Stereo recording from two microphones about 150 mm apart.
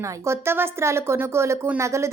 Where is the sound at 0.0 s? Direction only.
15° right (ahead or behind).